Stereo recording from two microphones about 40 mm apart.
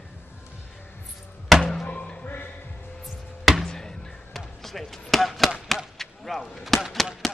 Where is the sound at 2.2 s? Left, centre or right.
Left.